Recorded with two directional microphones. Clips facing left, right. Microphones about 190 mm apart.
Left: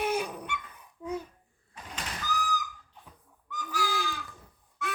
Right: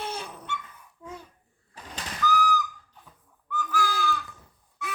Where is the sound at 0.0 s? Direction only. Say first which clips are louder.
Left 6 dB; 15° left (ahead or behind).